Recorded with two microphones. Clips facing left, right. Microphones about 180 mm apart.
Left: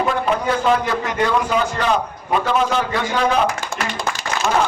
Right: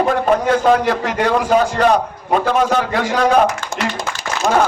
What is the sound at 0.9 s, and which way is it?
Speech, 75° right (ahead or behind).